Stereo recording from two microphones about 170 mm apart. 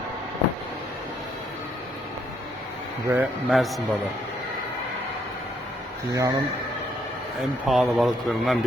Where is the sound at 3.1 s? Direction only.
5° right (ahead or behind).